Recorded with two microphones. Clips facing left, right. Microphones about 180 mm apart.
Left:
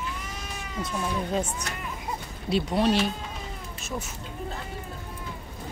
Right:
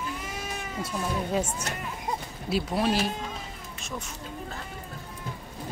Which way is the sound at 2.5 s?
5° right (ahead or behind).